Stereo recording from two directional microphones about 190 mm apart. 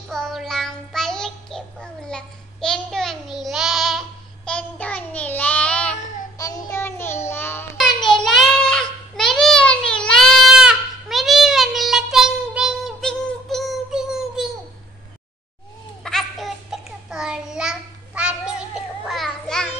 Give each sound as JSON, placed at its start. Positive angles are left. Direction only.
{"t": 0.1, "sound": "child singing", "side_deg": 0}
{"t": 6.3, "sound": "child singing", "side_deg": 15}
{"t": 7.7, "sound": "child singing", "side_deg": 0}
{"t": 16.0, "sound": "a sound", "side_deg": 0}